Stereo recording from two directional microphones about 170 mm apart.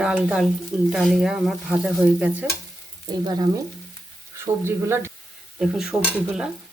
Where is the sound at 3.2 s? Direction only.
25° right (ahead or behind).